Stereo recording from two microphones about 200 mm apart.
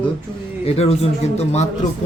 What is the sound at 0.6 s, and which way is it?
A man's voice, 30° left (ahead or behind).